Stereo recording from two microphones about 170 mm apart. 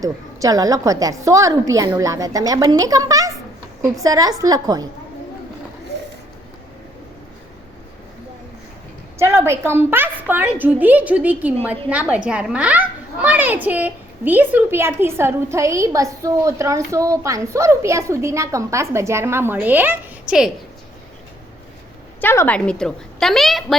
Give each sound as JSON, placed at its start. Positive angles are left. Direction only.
{"t": 0.0, "sound": "a woman's voice", "side_deg": -20}
{"t": 9.1, "sound": "a child's voice", "side_deg": -15}
{"t": 22.2, "sound": "a woman's voice", "side_deg": 10}